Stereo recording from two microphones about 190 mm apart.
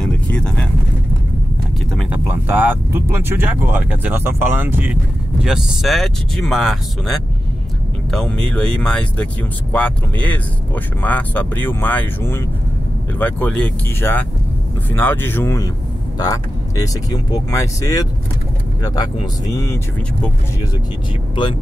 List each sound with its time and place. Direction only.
0.0 s vehicle: 5° left (ahead or behind)
2.0 s speech: 10° right (ahead or behind); by 19.8 s 15° left (ahead or behind)